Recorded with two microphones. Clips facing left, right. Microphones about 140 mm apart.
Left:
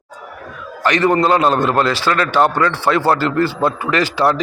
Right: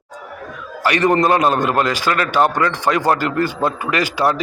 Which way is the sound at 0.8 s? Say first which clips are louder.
Left 1 dB; 10° right (ahead or behind).